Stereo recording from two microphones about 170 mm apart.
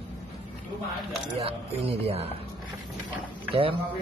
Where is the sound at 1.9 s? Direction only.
35° right (ahead or behind).